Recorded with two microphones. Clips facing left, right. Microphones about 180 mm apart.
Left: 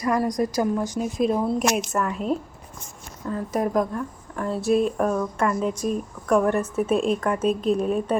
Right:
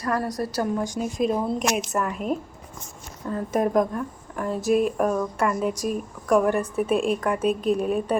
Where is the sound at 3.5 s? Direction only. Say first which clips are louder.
Right 2 dB; 20° right (ahead or behind).